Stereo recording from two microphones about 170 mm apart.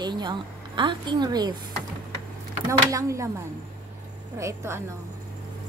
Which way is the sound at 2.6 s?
20° right (ahead or behind).